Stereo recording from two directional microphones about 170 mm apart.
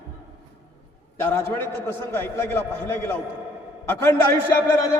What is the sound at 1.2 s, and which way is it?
A man's voice, 15° left (ahead or behind).